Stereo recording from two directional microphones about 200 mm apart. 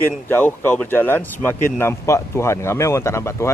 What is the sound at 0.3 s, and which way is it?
Speech, 10° left (ahead or behind).